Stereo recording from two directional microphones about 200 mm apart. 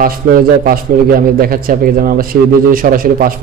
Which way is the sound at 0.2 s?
45° right (ahead or behind).